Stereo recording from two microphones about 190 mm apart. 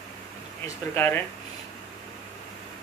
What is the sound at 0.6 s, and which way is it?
Speech, 10° left (ahead or behind).